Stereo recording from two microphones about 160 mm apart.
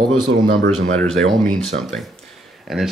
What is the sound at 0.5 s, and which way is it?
Speech, 65° right (ahead or behind).